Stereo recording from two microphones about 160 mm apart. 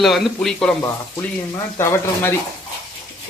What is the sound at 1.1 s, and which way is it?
Speech, 15° left (ahead or behind).